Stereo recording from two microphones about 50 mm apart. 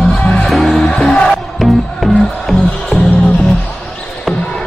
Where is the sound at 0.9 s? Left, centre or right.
Left.